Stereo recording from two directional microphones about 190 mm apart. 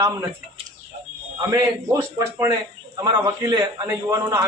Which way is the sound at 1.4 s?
20° right (ahead or behind).